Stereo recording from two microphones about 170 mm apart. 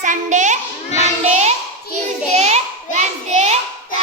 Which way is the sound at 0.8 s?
40° left (ahead or behind).